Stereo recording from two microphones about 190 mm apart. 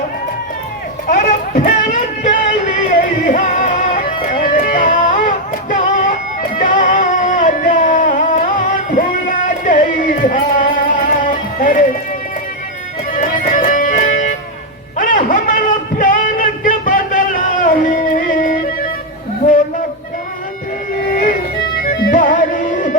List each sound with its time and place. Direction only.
1.0 s music: 45° left (ahead or behind)
5.7 s vehicle: 45° left (ahead or behind)
6.6 s music: 45° left (ahead or behind)
13.1 s music: 40° left (ahead or behind)
14.9 s a sound: 45° left (ahead or behind)
21.1 s music: 45° left (ahead or behind)